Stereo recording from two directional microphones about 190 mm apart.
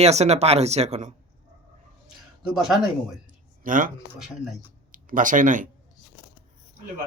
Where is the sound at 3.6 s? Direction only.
45° right (ahead or behind).